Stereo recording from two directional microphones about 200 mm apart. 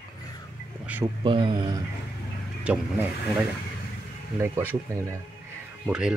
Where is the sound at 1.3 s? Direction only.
25° right (ahead or behind).